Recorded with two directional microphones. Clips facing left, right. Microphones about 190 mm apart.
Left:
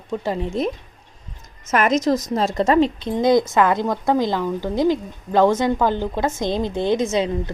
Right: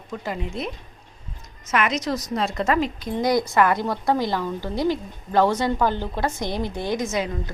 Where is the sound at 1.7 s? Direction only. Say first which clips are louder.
Left 6 dB; 40° left (ahead or behind).